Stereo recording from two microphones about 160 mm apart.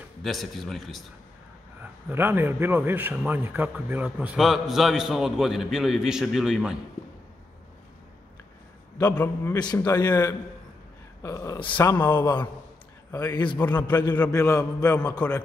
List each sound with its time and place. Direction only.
0.2 s a man's voice: centre (ahead or behind)
1.8 s a man's voice: 10° right (ahead or behind)
8.9 s speech: 15° left (ahead or behind)
11.2 s speech: 20° left (ahead or behind)
13.1 s speech: 25° left (ahead or behind)
13.6 s speech: 10° left (ahead or behind)